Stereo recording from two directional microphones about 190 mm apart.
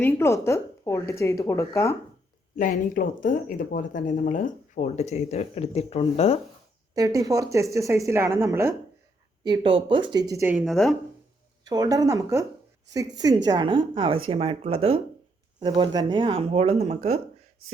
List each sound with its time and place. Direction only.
0.0 s a woman's voice: 10° left (ahead or behind)
2.6 s speech: 45° left (ahead or behind)
6.9 s speech: 20° right (ahead or behind)
9.4 s speech: 25° right (ahead or behind); by 10.9 s centre (ahead or behind)
11.6 s speech: 20° right (ahead or behind); by 17.2 s 35° right (ahead or behind)